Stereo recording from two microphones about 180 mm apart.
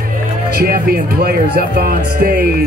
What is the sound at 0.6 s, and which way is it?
Speech, 55° right (ahead or behind).